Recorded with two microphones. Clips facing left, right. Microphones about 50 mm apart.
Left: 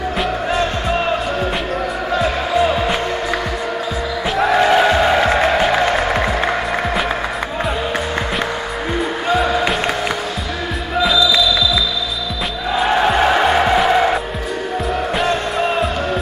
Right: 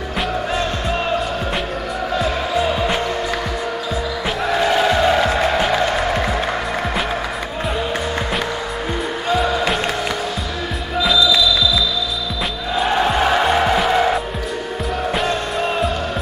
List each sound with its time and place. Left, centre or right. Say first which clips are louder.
2.1 s music: left 3 dB; centre
4.4 s music: left 5 dB; left
9.3 s music: left 1 dB; centre
12.8 s music: left 2 dB; centre